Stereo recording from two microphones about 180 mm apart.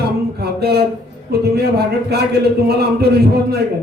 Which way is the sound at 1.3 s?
60° right (ahead or behind).